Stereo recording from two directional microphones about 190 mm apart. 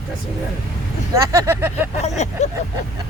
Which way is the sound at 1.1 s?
15° right (ahead or behind).